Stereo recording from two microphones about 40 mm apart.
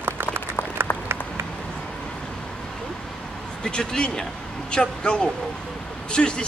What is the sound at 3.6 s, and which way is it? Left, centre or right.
Speech, left.